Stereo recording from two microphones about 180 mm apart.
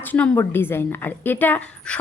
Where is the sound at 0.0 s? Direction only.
10° left (ahead or behind).